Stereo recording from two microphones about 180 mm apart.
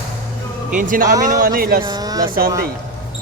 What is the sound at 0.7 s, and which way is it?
Speech, 45° right (ahead or behind).